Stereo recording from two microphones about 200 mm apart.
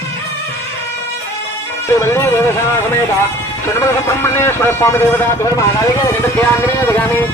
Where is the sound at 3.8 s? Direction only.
15° left (ahead or behind).